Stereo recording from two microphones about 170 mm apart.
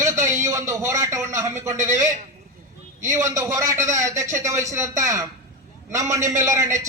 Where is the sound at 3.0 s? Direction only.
20° right (ahead or behind).